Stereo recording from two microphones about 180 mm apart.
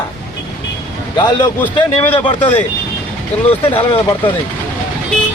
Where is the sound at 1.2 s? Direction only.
25° left (ahead or behind).